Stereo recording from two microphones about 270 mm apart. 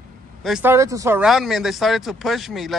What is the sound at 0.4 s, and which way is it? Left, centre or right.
Speech, centre.